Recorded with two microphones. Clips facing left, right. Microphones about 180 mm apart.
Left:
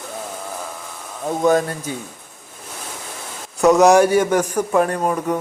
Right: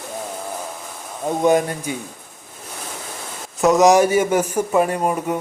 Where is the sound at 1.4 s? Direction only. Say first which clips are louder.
Even; 15° right (ahead or behind).